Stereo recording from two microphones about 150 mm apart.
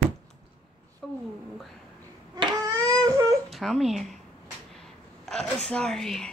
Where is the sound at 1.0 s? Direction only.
5° left (ahead or behind).